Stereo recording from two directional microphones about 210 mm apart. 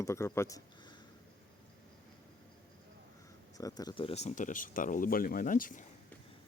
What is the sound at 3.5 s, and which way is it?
Speech, 15° left (ahead or behind).